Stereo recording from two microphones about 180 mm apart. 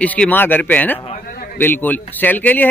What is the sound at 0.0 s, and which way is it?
Speech, 10° left (ahead or behind).